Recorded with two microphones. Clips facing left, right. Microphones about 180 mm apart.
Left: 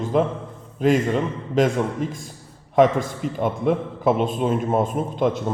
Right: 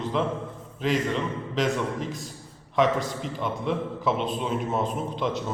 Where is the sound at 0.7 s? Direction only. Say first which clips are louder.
Left 7 dB; 50° left (ahead or behind).